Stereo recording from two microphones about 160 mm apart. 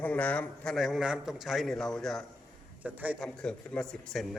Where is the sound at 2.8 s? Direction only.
10° right (ahead or behind).